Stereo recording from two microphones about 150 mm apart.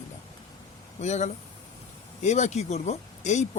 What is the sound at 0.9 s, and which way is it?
Speech, 50° left (ahead or behind).